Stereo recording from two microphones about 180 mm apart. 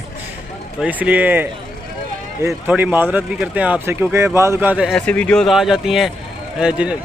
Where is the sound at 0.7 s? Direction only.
10° right (ahead or behind).